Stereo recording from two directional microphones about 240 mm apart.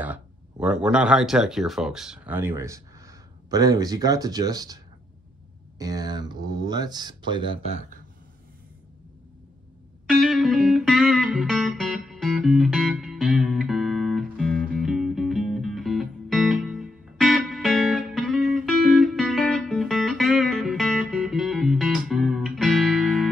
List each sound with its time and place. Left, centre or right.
0.0 s a sound: centre
0.8 s speech: centre
5.8 s speech: centre
10.0 s music: centre